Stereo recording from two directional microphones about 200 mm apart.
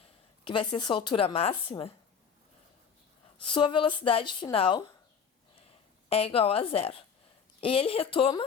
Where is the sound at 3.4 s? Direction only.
25° left (ahead or behind).